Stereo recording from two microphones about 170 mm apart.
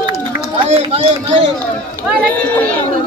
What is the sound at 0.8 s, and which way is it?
Speech, 35° right (ahead or behind).